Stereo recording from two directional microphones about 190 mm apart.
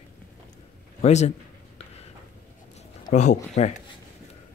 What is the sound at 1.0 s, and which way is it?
Speech, 35° left (ahead or behind).